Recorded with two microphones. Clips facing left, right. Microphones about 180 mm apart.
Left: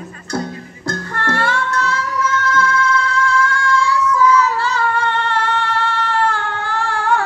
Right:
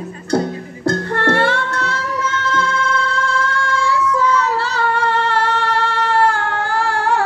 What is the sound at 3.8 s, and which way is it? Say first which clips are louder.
Child singing: even; 60° right (ahead or behind).